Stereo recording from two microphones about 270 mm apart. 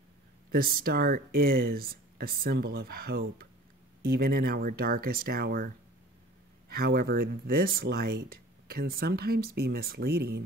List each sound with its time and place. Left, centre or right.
0.5 s speech: right
6.7 s speech: right